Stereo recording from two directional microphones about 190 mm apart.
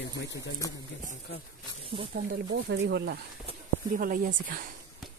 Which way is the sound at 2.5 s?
65° right (ahead or behind).